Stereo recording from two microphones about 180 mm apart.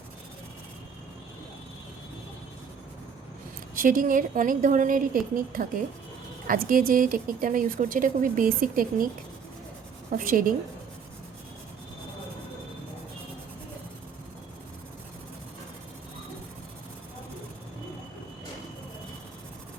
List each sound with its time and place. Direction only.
3.8 s a woman's voice: 50° right (ahead or behind)
10.1 s a woman's voice: 50° right (ahead or behind)